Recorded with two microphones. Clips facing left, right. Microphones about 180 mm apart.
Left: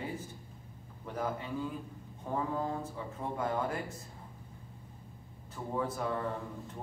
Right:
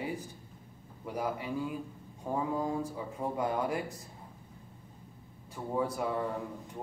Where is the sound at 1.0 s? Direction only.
10° right (ahead or behind).